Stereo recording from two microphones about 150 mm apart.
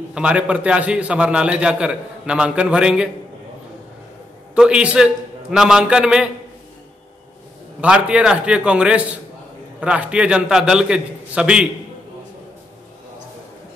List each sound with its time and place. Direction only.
0.1 s a man's voice: 10° right (ahead or behind)
4.6 s a man's voice: 5° right (ahead or behind)
7.8 s a man's voice: 5° right (ahead or behind)